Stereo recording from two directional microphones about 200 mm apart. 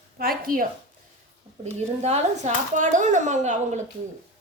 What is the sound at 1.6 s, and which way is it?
Speech, 35° right (ahead or behind).